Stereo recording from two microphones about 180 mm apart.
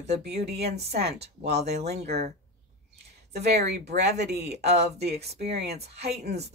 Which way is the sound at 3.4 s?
65° right (ahead or behind).